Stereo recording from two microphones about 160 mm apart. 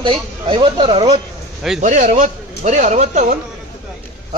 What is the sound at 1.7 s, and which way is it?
Speech, 50° right (ahead or behind).